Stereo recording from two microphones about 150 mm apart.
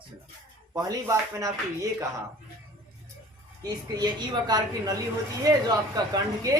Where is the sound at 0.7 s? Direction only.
20° right (ahead or behind).